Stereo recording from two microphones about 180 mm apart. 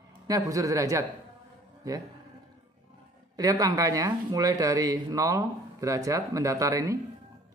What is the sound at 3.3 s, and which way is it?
Speech, 20° right (ahead or behind).